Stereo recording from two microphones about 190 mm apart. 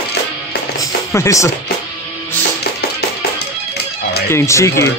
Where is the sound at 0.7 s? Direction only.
15° left (ahead or behind).